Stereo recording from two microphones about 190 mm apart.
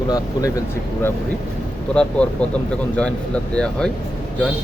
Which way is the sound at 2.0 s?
5° left (ahead or behind).